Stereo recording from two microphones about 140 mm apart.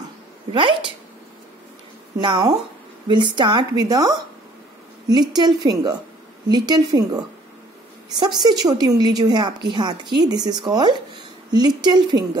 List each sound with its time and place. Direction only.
0.5 s a woman's voice: 40° right (ahead or behind)
2.1 s a woman's voice: 30° right (ahead or behind)